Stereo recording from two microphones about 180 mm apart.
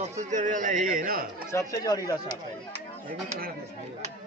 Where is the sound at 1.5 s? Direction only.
20° left (ahead or behind).